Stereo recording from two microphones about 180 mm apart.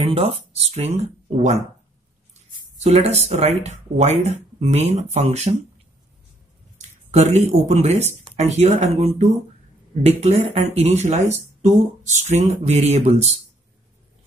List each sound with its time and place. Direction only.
0.0 s speech: 35° right (ahead or behind)
2.8 s speech: 40° right (ahead or behind)
7.1 s speech: 40° right (ahead or behind)
12.3 s speech: 40° right (ahead or behind)